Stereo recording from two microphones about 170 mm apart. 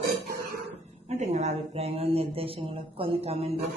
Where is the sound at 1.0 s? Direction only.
40° right (ahead or behind).